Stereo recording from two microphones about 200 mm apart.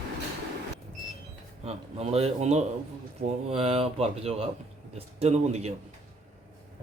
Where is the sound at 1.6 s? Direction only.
30° right (ahead or behind).